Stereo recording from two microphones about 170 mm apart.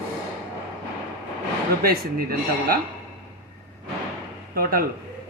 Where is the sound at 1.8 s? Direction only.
60° right (ahead or behind).